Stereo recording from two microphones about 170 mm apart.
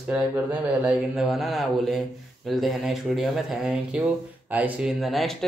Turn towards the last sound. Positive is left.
turn(degrees=0)  # may be behind; listen again after turning